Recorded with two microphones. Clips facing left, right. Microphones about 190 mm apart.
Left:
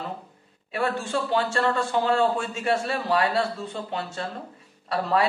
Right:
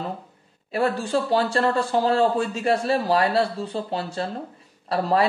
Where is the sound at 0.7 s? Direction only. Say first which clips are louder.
Right 4 dB; 35° right (ahead or behind).